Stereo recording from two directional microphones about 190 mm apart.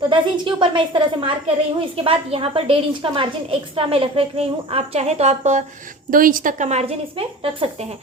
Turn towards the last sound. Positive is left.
turn(degrees=-30)  # may be behind; listen again after turning